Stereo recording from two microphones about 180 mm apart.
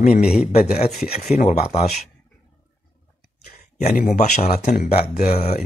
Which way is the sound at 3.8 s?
40° left (ahead or behind).